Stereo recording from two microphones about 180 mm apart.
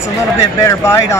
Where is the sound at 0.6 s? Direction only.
15° left (ahead or behind).